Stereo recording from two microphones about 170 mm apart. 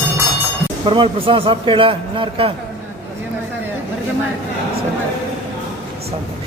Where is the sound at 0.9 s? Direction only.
30° right (ahead or behind).